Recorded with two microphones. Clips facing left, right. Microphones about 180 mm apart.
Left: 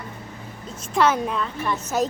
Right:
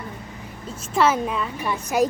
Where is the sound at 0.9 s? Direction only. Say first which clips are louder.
Even; 5° right (ahead or behind).